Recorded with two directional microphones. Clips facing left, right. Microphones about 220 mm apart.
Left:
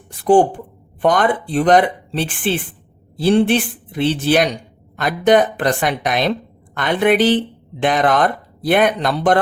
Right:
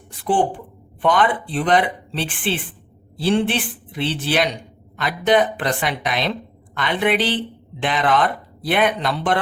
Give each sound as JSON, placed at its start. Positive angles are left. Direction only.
{"t": 1.0, "sound": "speech", "side_deg": 45}